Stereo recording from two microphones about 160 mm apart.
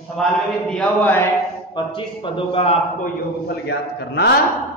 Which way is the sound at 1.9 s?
30° left (ahead or behind).